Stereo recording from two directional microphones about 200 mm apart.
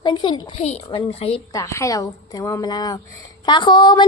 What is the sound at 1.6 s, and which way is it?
A woman's voice, 15° left (ahead or behind).